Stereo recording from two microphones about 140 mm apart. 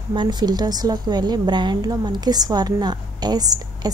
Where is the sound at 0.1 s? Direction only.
35° right (ahead or behind).